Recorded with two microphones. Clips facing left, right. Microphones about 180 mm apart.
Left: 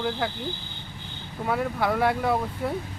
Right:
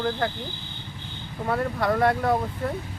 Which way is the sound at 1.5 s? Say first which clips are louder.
Right 1 dB; 5° left (ahead or behind).